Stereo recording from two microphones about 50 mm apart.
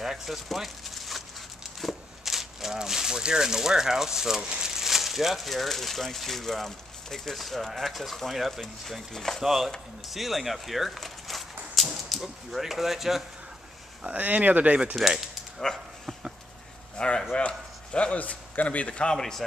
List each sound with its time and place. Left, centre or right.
0.0 s a sound: centre
4.5 s speech: centre
9.4 s speech: centre
14.0 s speech: right
15.7 s speech: centre
16.9 s speech: centre